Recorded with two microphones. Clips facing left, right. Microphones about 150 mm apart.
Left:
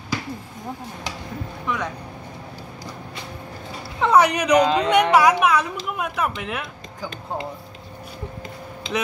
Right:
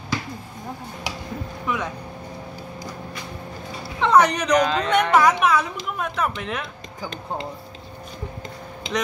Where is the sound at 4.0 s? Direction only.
10° left (ahead or behind).